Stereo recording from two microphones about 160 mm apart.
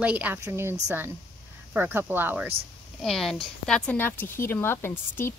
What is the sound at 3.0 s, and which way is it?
Speech, centre (ahead or behind).